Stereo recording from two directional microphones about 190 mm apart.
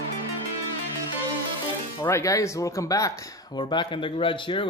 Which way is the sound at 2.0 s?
15° left (ahead or behind).